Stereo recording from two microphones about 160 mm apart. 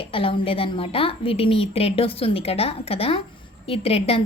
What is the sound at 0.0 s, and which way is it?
A woman's voice, 35° left (ahead or behind).